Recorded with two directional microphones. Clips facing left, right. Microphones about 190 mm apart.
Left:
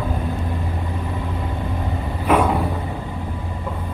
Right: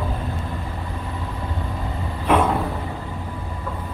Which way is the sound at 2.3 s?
Centre (ahead or behind).